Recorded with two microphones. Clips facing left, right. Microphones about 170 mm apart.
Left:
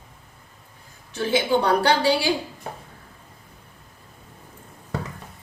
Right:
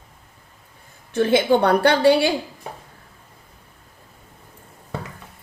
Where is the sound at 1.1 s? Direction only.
55° right (ahead or behind).